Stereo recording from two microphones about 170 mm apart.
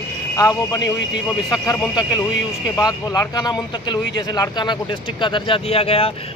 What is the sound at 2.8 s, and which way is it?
Speech, 20° left (ahead or behind).